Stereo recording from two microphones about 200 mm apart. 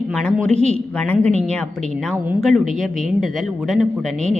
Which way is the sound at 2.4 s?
Centre (ahead or behind).